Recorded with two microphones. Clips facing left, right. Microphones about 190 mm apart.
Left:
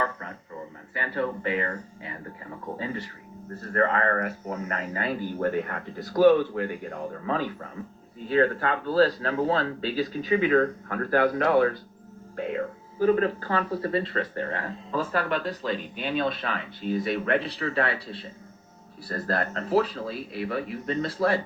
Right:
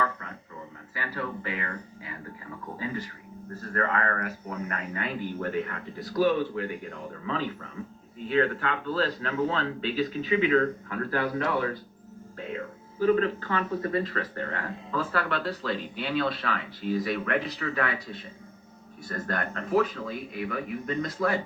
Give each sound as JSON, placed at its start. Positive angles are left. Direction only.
{"t": 0.9, "sound": "speech", "side_deg": 25}
{"t": 6.1, "sound": "speech", "side_deg": 50}
{"t": 13.0, "sound": "speech", "side_deg": 40}